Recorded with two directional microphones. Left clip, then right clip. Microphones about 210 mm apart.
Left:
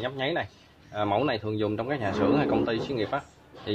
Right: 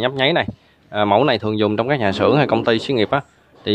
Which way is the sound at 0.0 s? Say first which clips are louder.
Right 12 dB; 45° right (ahead or behind).